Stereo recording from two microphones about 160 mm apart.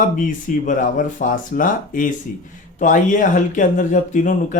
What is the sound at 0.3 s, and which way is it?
Speech, 55° left (ahead or behind).